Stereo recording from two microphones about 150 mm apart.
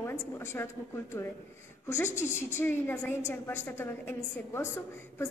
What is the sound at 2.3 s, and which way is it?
A woman's voice, 15° left (ahead or behind).